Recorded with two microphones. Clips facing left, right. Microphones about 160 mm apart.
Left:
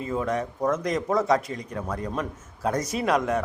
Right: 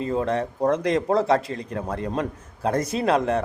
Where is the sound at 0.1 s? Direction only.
35° right (ahead or behind).